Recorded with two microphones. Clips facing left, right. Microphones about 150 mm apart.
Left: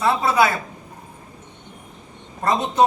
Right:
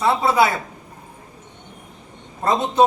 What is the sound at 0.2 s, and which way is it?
Speech, 25° right (ahead or behind).